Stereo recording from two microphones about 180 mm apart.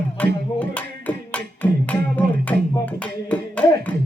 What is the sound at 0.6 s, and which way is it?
Music, 10° left (ahead or behind).